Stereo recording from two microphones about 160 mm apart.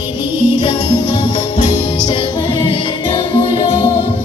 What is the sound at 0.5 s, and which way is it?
Music, 30° left (ahead or behind).